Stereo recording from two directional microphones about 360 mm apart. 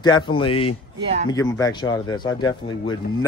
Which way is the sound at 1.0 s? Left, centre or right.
Centre.